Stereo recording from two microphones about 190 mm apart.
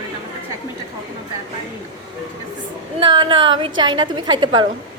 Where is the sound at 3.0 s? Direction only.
25° right (ahead or behind).